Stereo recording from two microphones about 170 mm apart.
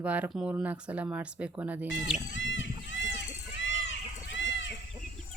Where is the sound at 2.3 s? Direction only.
90° left.